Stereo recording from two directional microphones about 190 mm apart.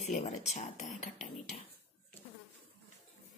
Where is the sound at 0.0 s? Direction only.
35° left (ahead or behind).